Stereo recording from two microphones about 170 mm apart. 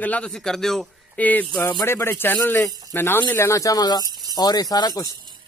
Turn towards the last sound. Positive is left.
turn(degrees=-25)  # may be behind; listen again after turning